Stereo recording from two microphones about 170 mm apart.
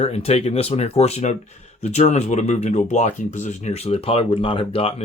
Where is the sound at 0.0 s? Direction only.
35° left (ahead or behind).